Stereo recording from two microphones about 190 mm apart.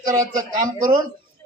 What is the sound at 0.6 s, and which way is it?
Speech, 45° right (ahead or behind).